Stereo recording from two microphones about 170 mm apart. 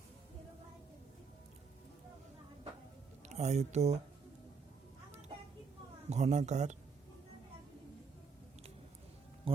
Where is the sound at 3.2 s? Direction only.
40° right (ahead or behind).